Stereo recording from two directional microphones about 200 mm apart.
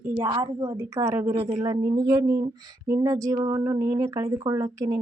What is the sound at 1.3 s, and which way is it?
Speech, 25° right (ahead or behind).